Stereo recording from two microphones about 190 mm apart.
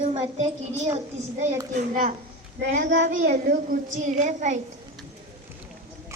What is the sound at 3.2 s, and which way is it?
Speech, 45° right (ahead or behind).